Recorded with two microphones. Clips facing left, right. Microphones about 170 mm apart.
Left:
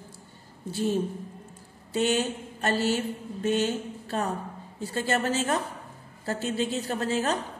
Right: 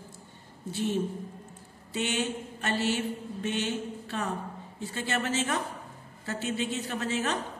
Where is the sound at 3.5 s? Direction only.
40° left (ahead or behind).